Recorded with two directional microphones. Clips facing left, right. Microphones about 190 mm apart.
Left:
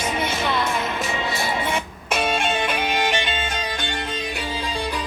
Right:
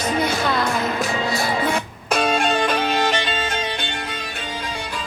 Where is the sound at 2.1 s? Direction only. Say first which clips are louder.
Right 3 dB; 5° left (ahead or behind).